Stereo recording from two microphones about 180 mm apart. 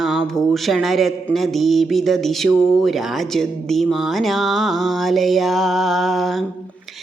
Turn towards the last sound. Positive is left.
turn(degrees=0)  # may be behind; listen again after turning